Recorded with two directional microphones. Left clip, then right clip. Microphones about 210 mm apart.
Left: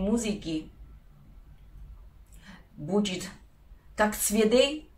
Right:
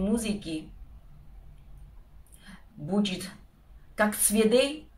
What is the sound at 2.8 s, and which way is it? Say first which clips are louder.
Speech: left 1 dB; 5° right (ahead or behind).